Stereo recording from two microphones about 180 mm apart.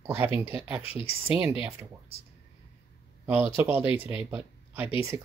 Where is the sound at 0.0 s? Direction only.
10° right (ahead or behind).